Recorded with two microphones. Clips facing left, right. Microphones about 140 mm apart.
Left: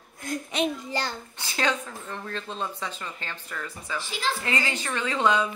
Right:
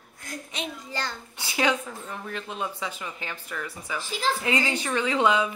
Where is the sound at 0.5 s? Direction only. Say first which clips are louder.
Left 9 dB; 60° left (ahead or behind).